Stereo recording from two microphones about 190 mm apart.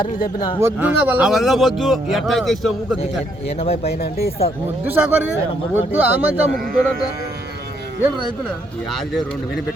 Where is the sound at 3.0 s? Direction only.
30° left (ahead or behind).